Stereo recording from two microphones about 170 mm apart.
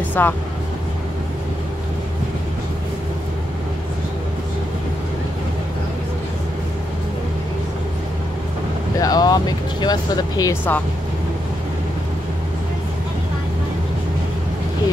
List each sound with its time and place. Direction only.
0.2 s speech: 10° left (ahead or behind)
9.0 s speech: 20° left (ahead or behind)